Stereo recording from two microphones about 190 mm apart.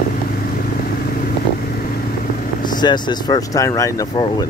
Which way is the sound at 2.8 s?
20° left (ahead or behind).